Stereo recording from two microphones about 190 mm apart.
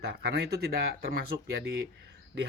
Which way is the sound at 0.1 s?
60° right (ahead or behind).